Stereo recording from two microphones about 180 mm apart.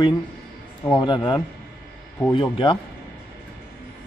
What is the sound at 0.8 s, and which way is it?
Speech, 25° left (ahead or behind).